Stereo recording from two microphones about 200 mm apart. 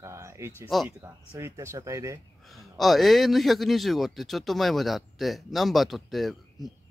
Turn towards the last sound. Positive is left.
turn(degrees=0)  # may be behind; listen again after turning